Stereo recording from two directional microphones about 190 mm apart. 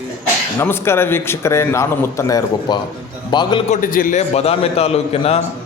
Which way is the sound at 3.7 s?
45° left (ahead or behind).